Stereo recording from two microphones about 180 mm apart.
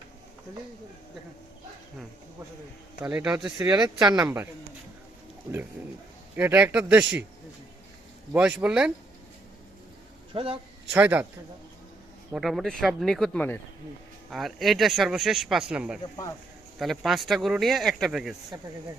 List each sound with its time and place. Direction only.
3.0 s speech: 5° right (ahead or behind)
6.3 s speech: 10° right (ahead or behind)
8.3 s speech: 5° right (ahead or behind)
10.3 s a man's voice: 30° right (ahead or behind)
10.9 s speech: 10° right (ahead or behind)
12.3 s speech: centre (ahead or behind)